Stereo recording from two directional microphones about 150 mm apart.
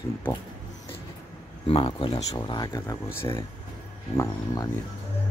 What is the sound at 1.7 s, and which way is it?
Speech, 35° left (ahead or behind).